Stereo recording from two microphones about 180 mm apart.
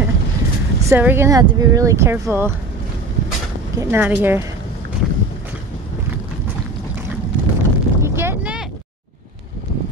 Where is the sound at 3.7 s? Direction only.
10° right (ahead or behind).